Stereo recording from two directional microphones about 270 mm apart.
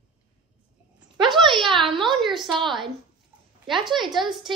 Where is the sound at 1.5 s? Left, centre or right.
Centre.